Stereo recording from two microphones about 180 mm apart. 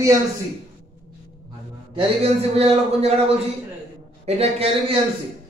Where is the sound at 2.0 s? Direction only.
35° right (ahead or behind).